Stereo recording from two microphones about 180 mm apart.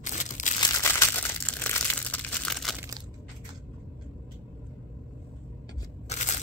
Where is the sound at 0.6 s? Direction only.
15° left (ahead or behind).